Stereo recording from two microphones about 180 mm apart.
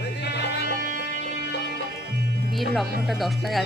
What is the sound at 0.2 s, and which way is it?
Music, 70° left (ahead or behind).